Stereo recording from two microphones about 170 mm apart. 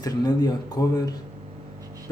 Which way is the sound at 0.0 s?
20° left (ahead or behind).